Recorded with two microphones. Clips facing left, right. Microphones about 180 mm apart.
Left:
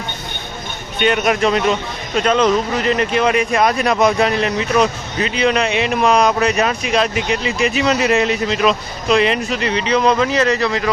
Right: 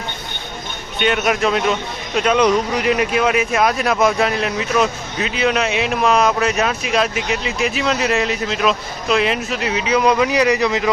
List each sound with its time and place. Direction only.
0.9 s speech: centre (ahead or behind); by 10.9 s 20° right (ahead or behind)